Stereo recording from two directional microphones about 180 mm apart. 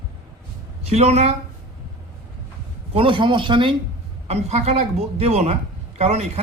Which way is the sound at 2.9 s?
30° right (ahead or behind).